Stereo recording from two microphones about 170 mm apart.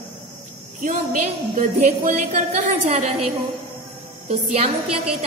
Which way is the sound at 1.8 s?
45° right (ahead or behind).